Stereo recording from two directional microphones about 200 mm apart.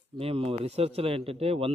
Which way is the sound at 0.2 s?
30° right (ahead or behind).